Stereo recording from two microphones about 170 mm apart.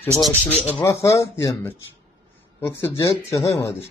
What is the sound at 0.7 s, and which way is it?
Speech, 15° left (ahead or behind).